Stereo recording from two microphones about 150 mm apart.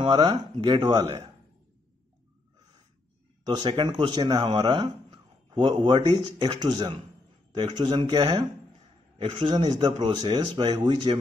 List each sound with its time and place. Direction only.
0.0 s speech: 30° right (ahead or behind)
3.5 s speech: 30° right (ahead or behind)